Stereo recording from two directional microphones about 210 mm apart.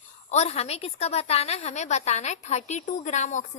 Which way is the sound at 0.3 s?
30° left (ahead or behind).